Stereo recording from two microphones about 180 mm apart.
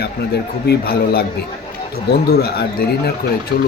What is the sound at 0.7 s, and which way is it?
Speech, 60° left (ahead or behind).